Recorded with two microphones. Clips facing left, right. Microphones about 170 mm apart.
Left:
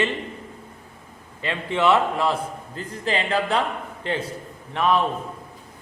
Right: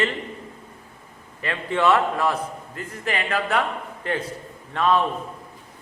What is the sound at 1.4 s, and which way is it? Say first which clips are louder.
A man's voice: even; 20° left (ahead or behind).